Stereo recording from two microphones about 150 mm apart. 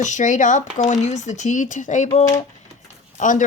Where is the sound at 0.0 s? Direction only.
55° left (ahead or behind).